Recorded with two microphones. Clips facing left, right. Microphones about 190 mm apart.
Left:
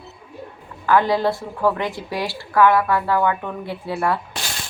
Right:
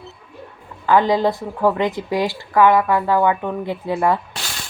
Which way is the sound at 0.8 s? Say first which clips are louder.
Right 2 dB; 20° right (ahead or behind).